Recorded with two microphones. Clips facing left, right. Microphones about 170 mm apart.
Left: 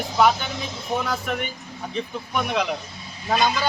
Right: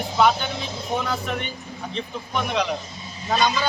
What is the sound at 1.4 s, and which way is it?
A man's voice, 10° left (ahead or behind).